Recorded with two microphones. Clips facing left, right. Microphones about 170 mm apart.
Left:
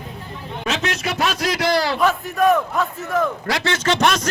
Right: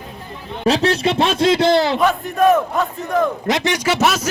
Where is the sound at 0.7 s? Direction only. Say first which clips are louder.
Right 8 dB; 35° right (ahead or behind).